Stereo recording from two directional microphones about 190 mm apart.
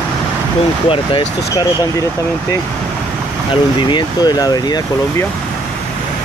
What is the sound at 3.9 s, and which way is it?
Speech, 20° left (ahead or behind).